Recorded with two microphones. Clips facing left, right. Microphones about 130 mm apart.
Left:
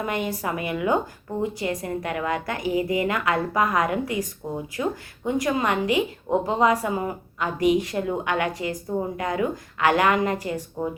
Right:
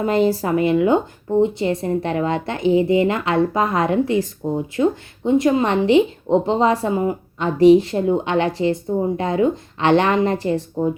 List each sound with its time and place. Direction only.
0.0 s speech: 30° right (ahead or behind)